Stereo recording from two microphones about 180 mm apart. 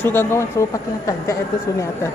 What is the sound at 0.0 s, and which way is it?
Speech, 10° left (ahead or behind).